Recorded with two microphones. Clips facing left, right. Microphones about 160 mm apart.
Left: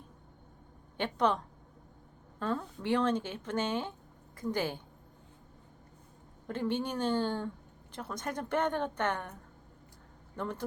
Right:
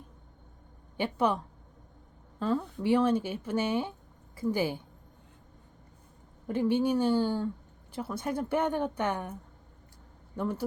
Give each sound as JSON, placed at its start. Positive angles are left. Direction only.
{"t": 0.9, "sound": "speech", "side_deg": -10}
{"t": 2.4, "sound": "speech", "side_deg": -5}
{"t": 6.5, "sound": "speech", "side_deg": -10}
{"t": 10.3, "sound": "speech", "side_deg": -10}